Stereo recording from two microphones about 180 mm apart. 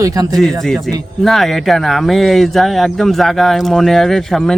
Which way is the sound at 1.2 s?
Centre (ahead or behind).